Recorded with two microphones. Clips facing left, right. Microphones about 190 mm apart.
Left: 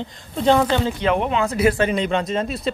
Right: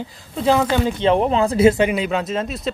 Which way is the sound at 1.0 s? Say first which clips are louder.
Right 3 dB; 30° right (ahead or behind).